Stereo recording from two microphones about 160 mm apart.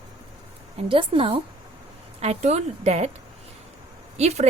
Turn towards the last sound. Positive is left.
turn(degrees=-45)  # may be behind; listen again after turning